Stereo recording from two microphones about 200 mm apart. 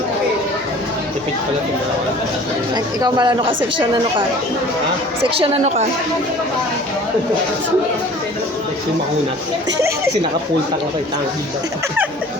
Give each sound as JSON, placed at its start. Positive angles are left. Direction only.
{"t": 2.7, "sound": "speech", "side_deg": -20}
{"t": 5.4, "sound": "a woman's voice", "side_deg": -35}